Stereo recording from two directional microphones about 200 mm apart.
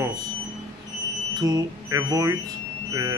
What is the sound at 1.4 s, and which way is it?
Speech, 15° right (ahead or behind).